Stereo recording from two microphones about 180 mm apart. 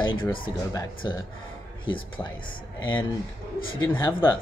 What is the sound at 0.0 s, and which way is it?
Speech, 25° left (ahead or behind).